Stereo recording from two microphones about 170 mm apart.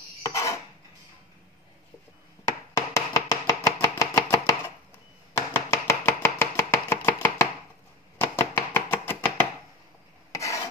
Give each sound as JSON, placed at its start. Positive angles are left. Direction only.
{"t": 0.2, "sound": "dishes", "side_deg": 20}
{"t": 2.4, "sound": "chopping", "side_deg": 15}
{"t": 10.3, "sound": "filing", "side_deg": 15}